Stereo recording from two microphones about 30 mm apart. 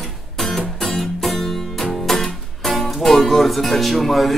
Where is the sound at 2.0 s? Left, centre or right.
Centre.